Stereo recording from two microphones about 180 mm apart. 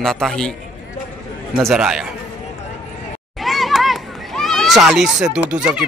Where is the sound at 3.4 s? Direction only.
Centre (ahead or behind).